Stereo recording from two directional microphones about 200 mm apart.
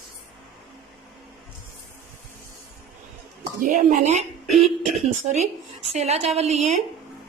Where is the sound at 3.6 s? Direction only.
40° right (ahead or behind).